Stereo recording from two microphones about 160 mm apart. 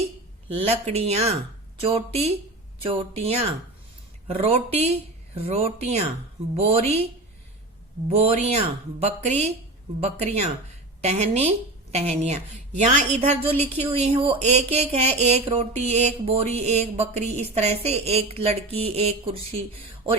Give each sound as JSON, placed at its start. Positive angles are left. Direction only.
{"t": 0.4, "sound": "a woman's voice", "side_deg": -35}
{"t": 8.1, "sound": "a woman's voice", "side_deg": -40}
{"t": 13.5, "sound": "a woman's voice", "side_deg": 10}
{"t": 13.9, "sound": "a woman's voice", "side_deg": -35}